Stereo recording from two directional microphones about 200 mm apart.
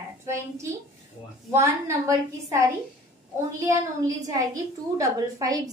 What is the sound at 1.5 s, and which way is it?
A woman's voice, 15° right (ahead or behind).